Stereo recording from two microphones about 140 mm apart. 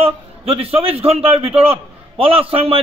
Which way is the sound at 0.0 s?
45° right (ahead or behind).